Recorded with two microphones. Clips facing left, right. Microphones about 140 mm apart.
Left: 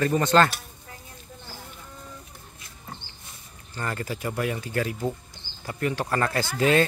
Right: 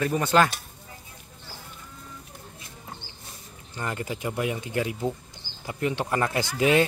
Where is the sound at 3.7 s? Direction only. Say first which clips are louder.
Even; 15° right (ahead or behind).